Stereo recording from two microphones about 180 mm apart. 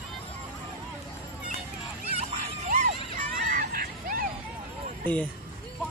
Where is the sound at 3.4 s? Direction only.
50° right (ahead or behind).